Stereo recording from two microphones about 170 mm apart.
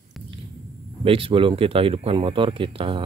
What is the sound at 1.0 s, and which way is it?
Speech, 35° right (ahead or behind).